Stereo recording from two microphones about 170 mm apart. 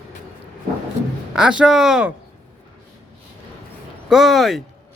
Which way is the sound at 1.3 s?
5° right (ahead or behind).